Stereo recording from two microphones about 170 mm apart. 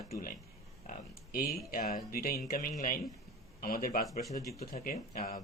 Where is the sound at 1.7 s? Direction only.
60° left (ahead or behind).